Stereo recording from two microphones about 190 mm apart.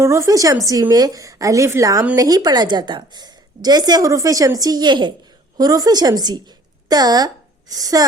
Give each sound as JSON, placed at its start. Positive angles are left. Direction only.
{"t": 0.0, "sound": "a woman's voice", "side_deg": -15}